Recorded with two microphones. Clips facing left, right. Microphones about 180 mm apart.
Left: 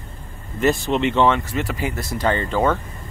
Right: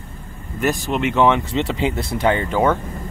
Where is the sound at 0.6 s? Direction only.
10° right (ahead or behind).